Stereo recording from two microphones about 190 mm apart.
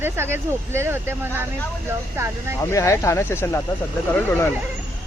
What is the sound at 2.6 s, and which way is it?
Speech, 15° left (ahead or behind).